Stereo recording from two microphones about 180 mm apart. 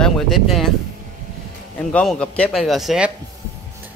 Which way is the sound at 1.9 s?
5° left (ahead or behind).